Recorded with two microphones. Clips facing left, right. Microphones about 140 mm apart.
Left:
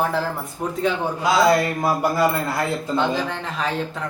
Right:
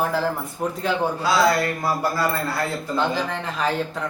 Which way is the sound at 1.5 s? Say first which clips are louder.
Left 3 dB; 20° left (ahead or behind).